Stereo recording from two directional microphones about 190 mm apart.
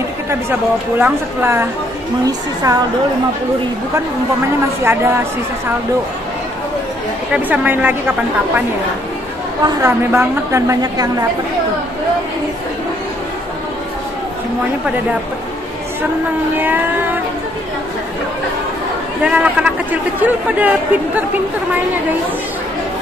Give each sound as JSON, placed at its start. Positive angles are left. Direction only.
{"t": 0.3, "sound": "a woman's voice", "side_deg": -10}
{"t": 4.8, "sound": "speech", "side_deg": -15}
{"t": 7.3, "sound": "speech", "side_deg": -5}
{"t": 9.8, "sound": "speech", "side_deg": -15}
{"t": 16.5, "sound": "speech", "side_deg": -10}
{"t": 19.2, "sound": "speech", "side_deg": -5}